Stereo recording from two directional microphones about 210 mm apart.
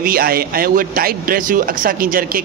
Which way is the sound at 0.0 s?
45° right (ahead or behind).